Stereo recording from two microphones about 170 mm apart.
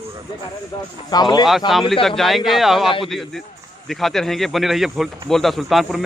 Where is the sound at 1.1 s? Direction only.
25° left (ahead or behind).